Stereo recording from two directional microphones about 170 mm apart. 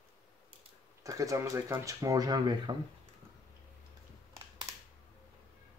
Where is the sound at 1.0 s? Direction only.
20° right (ahead or behind).